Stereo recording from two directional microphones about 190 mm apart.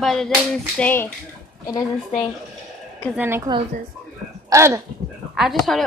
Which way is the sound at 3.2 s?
10° right (ahead or behind).